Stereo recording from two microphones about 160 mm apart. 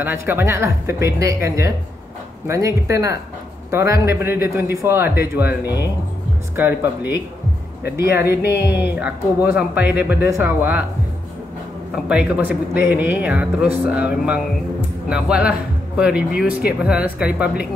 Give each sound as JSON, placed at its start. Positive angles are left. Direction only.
{"t": 0.0, "sound": "speech", "side_deg": -15}
{"t": 6.5, "sound": "speech", "side_deg": -10}
{"t": 11.9, "sound": "speech", "side_deg": -5}